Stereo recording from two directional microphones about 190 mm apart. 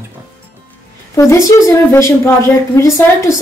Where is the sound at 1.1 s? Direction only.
15° left (ahead or behind).